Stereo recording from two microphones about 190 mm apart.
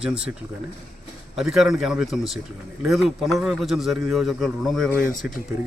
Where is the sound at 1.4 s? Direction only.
Centre (ahead or behind).